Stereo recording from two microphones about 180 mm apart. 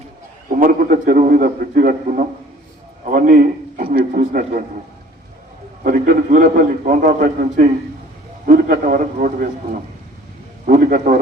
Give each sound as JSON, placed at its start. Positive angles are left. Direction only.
{"t": 0.4, "sound": "a man's voice", "side_deg": -50}
{"t": 5.8, "sound": "a man's voice", "side_deg": -50}
{"t": 10.7, "sound": "a man's voice", "side_deg": -55}